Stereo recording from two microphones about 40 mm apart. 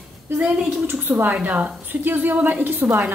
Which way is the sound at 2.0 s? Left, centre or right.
Right.